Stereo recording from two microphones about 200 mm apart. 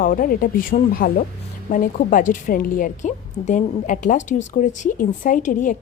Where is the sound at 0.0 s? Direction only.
45° left (ahead or behind).